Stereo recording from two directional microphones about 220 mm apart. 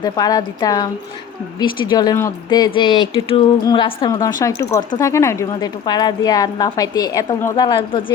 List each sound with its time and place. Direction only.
0.0 s speech: 15° left (ahead or behind)